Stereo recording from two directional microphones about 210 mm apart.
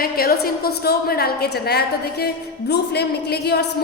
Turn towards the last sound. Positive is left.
turn(degrees=50)  # may be behind; listen again after turning